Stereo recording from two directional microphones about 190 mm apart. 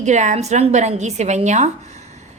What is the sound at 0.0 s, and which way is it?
A woman's voice, 40° right (ahead or behind).